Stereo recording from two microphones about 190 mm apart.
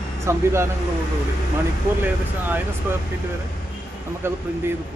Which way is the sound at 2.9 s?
10° right (ahead or behind).